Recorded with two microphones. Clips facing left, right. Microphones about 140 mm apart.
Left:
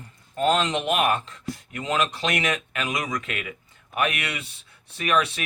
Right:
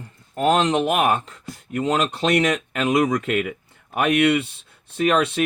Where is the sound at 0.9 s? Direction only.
60° right (ahead or behind).